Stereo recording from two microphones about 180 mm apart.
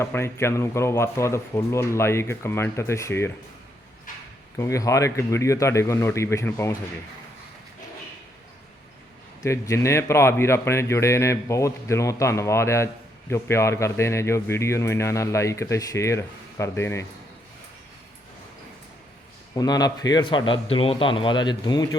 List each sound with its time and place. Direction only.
0.0 s speech: 15° left (ahead or behind)
4.5 s speech: 15° left (ahead or behind)
9.4 s speech: 15° left (ahead or behind)
19.5 s a man's voice: 20° left (ahead or behind)